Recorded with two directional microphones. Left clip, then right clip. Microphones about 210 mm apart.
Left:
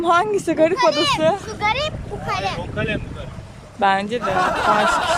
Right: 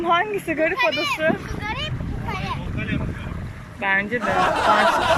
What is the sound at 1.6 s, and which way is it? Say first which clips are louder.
Vehicle: left 10 dB; 50° left (ahead or behind).